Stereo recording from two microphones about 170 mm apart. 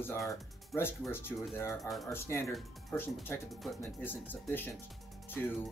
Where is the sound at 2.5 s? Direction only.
5° left (ahead or behind).